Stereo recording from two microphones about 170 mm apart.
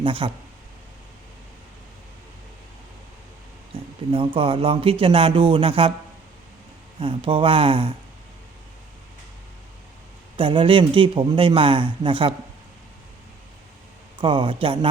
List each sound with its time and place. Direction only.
0.0 s a man's voice: 30° right (ahead or behind)
3.7 s a sound: 35° right (ahead or behind)
4.4 s a man's voice: 35° right (ahead or behind)
7.0 s a man's voice: 30° right (ahead or behind)
10.3 s a man's voice: 30° right (ahead or behind)
14.2 s a man's voice: 30° right (ahead or behind)